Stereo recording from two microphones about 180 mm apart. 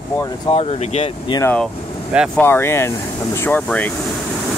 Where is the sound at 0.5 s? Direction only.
35° left (ahead or behind).